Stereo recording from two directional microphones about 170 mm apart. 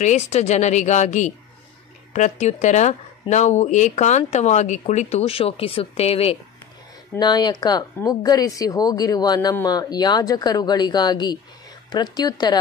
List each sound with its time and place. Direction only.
0.0 s speech: 40° left (ahead or behind)
7.2 s speech: 25° left (ahead or behind)